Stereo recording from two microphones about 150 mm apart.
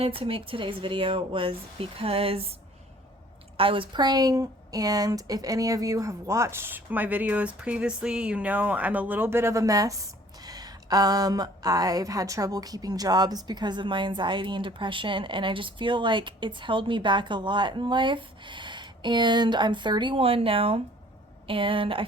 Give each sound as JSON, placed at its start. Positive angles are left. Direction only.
{"t": 0.0, "sound": "speech", "side_deg": -40}
{"t": 3.6, "sound": "a woman's voice", "side_deg": -35}